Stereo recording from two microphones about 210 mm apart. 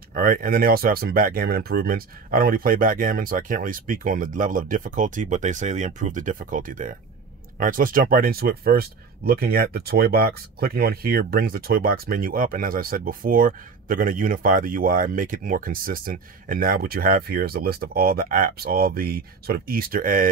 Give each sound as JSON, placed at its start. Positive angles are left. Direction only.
{"t": 0.1, "sound": "speech", "side_deg": -45}